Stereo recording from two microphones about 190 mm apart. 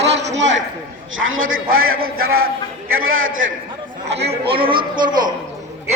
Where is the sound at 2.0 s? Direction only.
50° right (ahead or behind).